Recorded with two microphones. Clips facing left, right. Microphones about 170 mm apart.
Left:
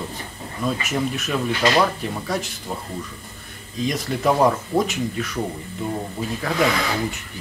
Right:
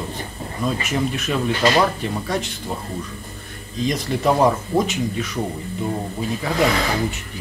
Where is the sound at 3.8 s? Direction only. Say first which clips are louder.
Right 1 dB; centre (ahead or behind).